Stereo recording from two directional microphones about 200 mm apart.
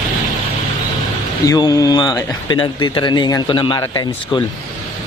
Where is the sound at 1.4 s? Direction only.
20° left (ahead or behind).